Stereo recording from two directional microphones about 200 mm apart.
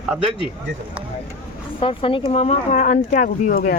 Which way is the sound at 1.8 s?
25° left (ahead or behind).